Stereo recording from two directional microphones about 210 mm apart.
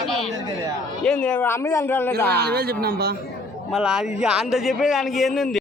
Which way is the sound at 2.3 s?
50° right (ahead or behind).